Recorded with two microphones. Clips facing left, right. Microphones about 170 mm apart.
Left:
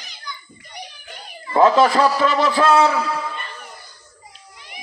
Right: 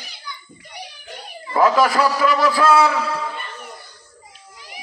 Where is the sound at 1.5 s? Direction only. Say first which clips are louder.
Left 2 dB; 25° left (ahead or behind).